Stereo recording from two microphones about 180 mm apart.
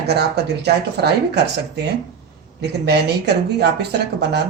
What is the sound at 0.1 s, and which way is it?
Speech, 65° right (ahead or behind).